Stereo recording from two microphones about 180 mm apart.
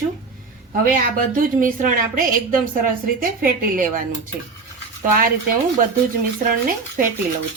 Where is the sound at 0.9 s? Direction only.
50° right (ahead or behind).